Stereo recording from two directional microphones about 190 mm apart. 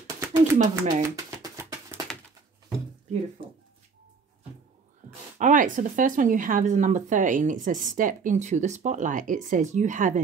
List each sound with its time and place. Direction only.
0.0 s a sound: 15° right (ahead or behind)
3.4 s speech: 25° right (ahead or behind)
5.4 s speech: 45° right (ahead or behind)